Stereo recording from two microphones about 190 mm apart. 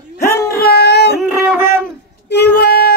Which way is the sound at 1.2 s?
5° right (ahead or behind).